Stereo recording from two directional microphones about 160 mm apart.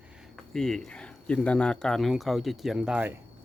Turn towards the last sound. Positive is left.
turn(degrees=-5)  # may be behind; listen again after turning